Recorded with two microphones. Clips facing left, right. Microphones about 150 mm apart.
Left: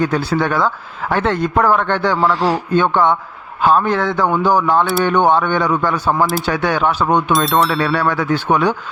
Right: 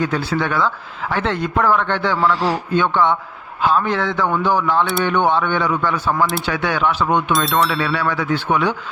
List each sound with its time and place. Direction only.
0.0 s a man's voice: 40° left (ahead or behind)